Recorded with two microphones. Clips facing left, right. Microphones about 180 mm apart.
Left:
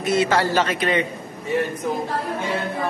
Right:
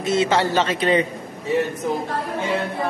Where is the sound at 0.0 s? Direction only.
25° right (ahead or behind).